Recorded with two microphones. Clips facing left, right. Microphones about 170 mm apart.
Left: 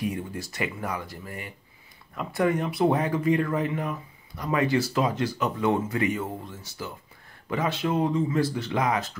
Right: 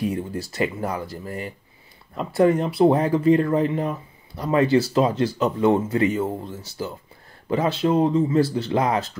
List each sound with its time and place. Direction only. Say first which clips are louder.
0.0 s speech: right 5 dB; 30° right (ahead or behind)